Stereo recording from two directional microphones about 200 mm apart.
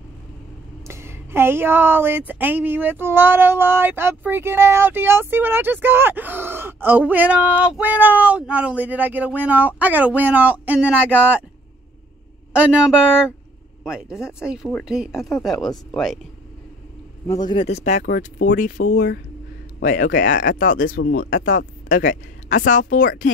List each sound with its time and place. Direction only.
0.8 s a woman's voice: 15° right (ahead or behind)
12.5 s speech: 5° right (ahead or behind)
17.3 s a man's voice: 20° left (ahead or behind)
17.6 s speech: 35° left (ahead or behind)